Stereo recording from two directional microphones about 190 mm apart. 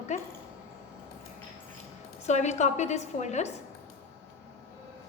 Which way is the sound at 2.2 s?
35° left (ahead or behind).